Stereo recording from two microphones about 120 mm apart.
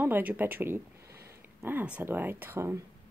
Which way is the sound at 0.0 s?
15° right (ahead or behind).